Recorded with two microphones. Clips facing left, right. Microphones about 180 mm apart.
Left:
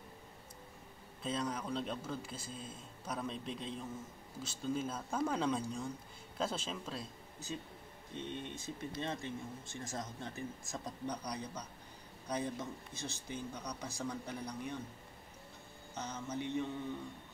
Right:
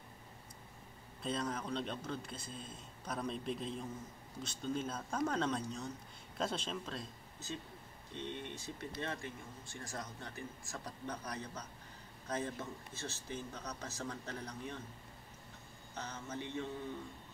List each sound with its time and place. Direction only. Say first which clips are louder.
1.2 s a man's voice: left 1 dB; centre (ahead or behind)
8.2 s speech: left 1 dB; 20° right (ahead or behind)
8.5 s a man's voice: left 2 dB; 20° left (ahead or behind)
15.9 s a man's voice: left 3 dB; 20° left (ahead or behind)